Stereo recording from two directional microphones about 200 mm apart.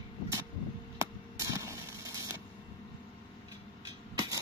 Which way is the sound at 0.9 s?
15° right (ahead or behind).